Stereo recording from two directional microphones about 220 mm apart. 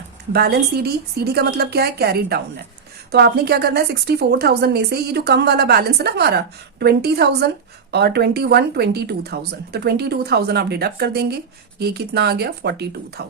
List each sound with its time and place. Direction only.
0.3 s a woman's voice: 45° right (ahead or behind)